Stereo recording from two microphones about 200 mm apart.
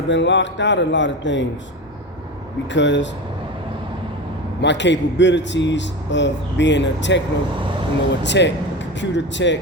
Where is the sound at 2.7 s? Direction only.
65° left (ahead or behind).